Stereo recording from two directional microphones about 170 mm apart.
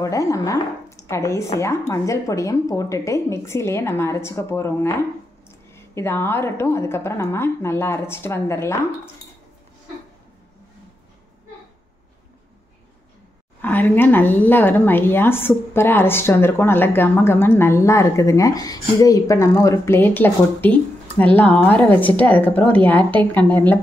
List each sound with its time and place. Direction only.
0.0 s speech: 20° left (ahead or behind)
13.6 s speech: 10° left (ahead or behind)